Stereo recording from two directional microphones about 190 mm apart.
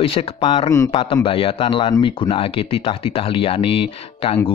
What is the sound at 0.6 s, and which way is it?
Speech, 15° left (ahead or behind).